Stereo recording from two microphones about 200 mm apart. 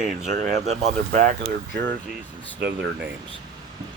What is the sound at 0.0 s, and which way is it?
Speech, 35° right (ahead or behind).